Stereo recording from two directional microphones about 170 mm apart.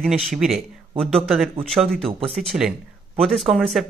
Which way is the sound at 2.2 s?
Centre (ahead or behind).